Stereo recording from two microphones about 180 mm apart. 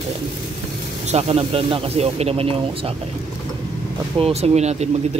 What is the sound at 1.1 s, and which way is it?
Speech, 35° right (ahead or behind).